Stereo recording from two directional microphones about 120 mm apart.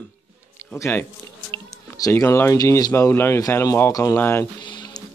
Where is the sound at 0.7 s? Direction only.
20° left (ahead or behind).